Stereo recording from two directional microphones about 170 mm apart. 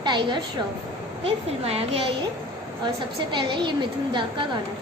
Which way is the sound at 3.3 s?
30° right (ahead or behind).